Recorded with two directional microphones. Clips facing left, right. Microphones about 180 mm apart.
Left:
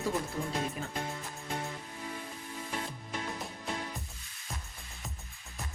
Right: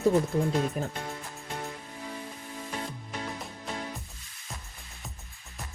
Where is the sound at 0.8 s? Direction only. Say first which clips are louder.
Right 7 dB; 45° right (ahead or behind).